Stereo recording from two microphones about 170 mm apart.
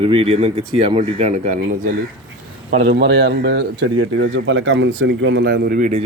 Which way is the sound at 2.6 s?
70° right (ahead or behind).